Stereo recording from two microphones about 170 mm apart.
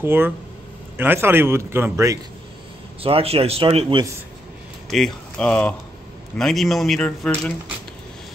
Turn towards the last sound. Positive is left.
turn(degrees=5)  # may be behind; listen again after turning